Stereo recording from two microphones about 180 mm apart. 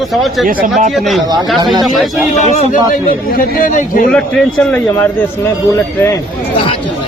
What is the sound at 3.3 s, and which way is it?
Speech, 50° left (ahead or behind).